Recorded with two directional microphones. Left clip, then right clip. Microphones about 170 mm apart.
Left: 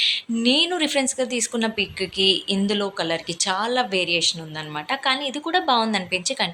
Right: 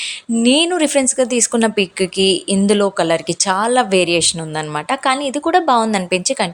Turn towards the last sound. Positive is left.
turn(degrees=-45)  # may be behind; listen again after turning